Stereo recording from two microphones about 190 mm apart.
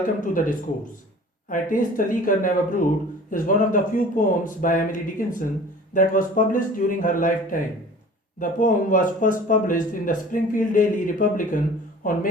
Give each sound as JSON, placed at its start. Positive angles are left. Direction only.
{"t": 0.2, "sound": "speech", "side_deg": 45}